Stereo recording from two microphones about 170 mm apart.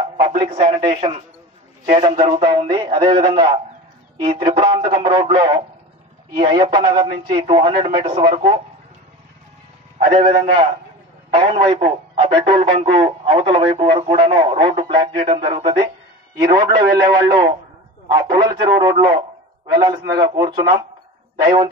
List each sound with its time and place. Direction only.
0.3 s a man's voice: 35° right (ahead or behind)
2.0 s a man's voice: 30° right (ahead or behind)
9.9 s a man's voice: 35° right (ahead or behind)